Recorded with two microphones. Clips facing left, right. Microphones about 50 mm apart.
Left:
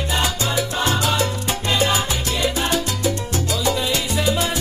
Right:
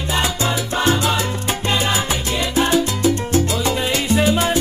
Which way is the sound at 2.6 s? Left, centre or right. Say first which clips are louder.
Right 5 dB; right.